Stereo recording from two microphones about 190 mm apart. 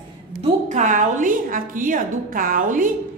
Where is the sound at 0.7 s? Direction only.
45° right (ahead or behind).